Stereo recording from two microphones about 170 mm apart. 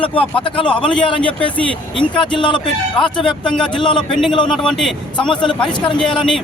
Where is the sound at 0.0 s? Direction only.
30° left (ahead or behind).